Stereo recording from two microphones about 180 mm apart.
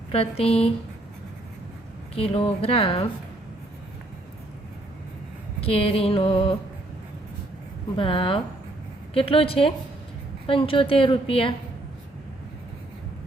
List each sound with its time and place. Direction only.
0.1 s music: 35° left (ahead or behind)
2.1 s music: 35° left (ahead or behind)
5.5 s music: 30° left (ahead or behind)
7.9 s a woman's voice: 30° left (ahead or behind)
9.1 s music: 30° left (ahead or behind)
10.4 s a woman's voice: 30° left (ahead or behind)